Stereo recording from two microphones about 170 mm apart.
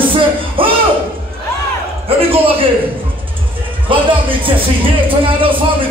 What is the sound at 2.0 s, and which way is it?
Speech, 35° right (ahead or behind).